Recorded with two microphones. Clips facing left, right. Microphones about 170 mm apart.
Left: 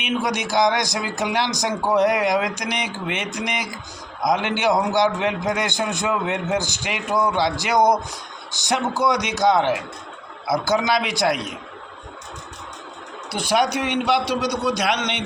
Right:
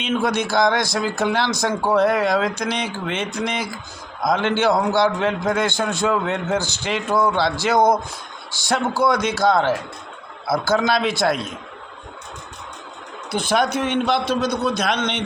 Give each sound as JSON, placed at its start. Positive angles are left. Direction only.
{"t": 0.0, "sound": "a man's voice", "side_deg": 15}
{"t": 13.3, "sound": "a man's voice", "side_deg": 10}